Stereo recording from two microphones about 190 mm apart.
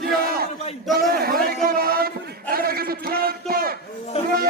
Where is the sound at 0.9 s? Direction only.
50° right (ahead or behind).